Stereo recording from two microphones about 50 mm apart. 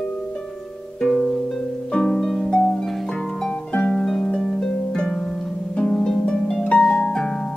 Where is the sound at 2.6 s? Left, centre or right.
Centre.